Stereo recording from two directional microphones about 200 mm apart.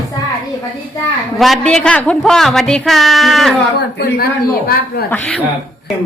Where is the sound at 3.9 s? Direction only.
50° left (ahead or behind).